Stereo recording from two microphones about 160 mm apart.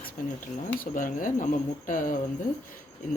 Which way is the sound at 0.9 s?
55° left (ahead or behind).